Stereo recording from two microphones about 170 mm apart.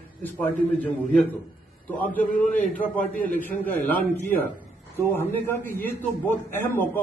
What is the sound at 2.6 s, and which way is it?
Speech, 50° left (ahead or behind).